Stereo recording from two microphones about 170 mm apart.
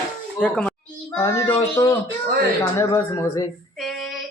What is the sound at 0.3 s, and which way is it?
Speech, 5° left (ahead or behind).